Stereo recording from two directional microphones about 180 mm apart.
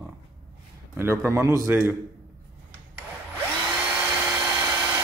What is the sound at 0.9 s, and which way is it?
Speech, 15° right (ahead or behind).